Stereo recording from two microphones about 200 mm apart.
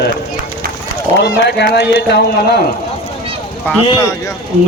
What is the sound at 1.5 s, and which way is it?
Speech, 55° left (ahead or behind).